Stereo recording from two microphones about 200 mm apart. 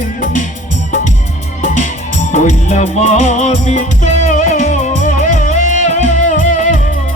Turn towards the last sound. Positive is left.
turn(degrees=40)  # may be behind; listen again after turning